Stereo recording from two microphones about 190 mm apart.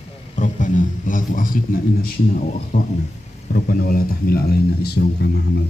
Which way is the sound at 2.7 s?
50° left (ahead or behind).